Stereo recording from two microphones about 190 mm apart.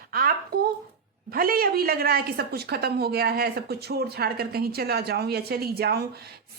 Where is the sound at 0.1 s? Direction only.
50° right (ahead or behind).